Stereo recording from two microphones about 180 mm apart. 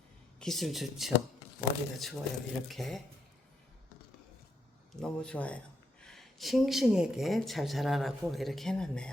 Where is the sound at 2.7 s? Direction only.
Centre (ahead or behind).